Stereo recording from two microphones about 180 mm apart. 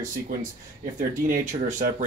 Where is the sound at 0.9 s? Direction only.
45° right (ahead or behind).